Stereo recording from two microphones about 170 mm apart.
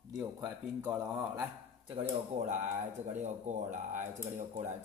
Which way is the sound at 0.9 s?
5° right (ahead or behind).